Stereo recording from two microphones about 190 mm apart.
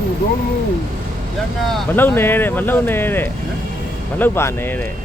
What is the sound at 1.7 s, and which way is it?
Speech, 10° left (ahead or behind).